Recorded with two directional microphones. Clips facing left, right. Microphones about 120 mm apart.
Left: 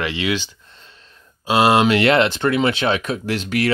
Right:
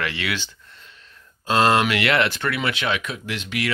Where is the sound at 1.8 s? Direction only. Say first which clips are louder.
Left 6 dB; 30° left (ahead or behind).